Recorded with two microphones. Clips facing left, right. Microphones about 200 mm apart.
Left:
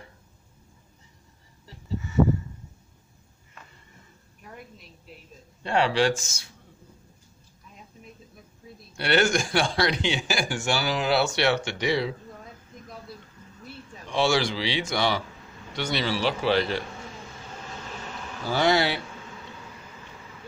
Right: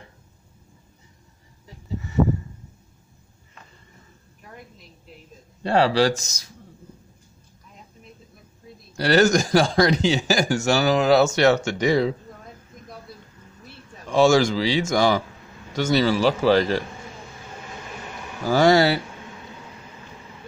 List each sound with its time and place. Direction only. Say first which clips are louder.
5.6 s a man's voice: right 4 dB; 35° right (ahead or behind)
8.9 s a man's voice: right 5 dB; 40° right (ahead or behind)
14.0 s speech: right 7 dB; 45° right (ahead or behind)
17.8 s a sound: right 1 dB; 10° right (ahead or behind)
18.4 s speech: right 6 dB; 45° right (ahead or behind)